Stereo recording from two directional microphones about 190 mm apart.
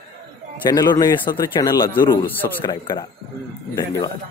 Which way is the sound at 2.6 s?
20° left (ahead or behind).